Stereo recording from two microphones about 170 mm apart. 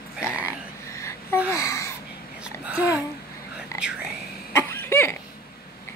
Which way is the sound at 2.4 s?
10° right (ahead or behind).